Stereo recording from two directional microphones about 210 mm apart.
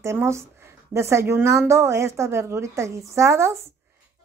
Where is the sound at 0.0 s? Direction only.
10° right (ahead or behind).